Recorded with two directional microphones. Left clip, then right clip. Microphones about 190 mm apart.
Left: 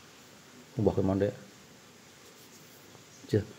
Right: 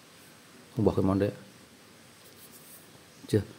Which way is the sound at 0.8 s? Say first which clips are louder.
Right 1 dB; 25° right (ahead or behind).